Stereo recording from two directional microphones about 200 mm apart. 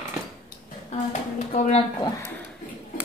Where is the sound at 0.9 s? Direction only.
35° left (ahead or behind).